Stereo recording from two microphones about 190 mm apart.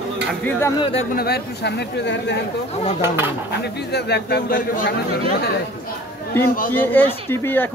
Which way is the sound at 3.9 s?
60° left (ahead or behind).